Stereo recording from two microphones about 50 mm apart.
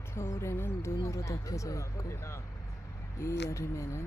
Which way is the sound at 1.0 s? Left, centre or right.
Left.